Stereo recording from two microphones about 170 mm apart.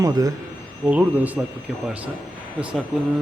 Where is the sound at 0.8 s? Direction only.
10° right (ahead or behind).